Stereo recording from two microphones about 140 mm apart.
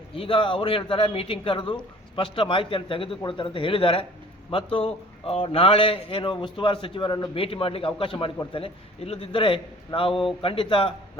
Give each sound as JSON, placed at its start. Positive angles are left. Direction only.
{"t": 0.2, "sound": "speech", "side_deg": 40}